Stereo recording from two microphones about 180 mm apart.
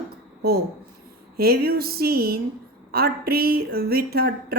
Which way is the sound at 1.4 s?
60° right (ahead or behind).